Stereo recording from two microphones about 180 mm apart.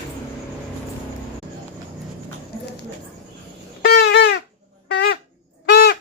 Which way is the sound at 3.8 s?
65° left (ahead or behind).